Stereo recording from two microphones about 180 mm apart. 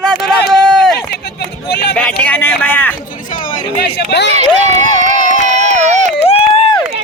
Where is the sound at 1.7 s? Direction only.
70° left (ahead or behind).